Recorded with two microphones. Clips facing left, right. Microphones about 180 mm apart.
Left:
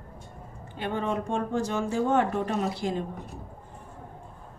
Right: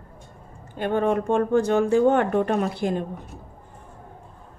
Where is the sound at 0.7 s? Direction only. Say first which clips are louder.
Right 7 dB; 55° right (ahead or behind).